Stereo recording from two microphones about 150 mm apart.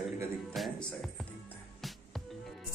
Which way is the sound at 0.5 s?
Centre (ahead or behind).